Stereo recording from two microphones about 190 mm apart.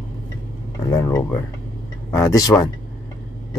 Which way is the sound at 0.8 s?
20° left (ahead or behind).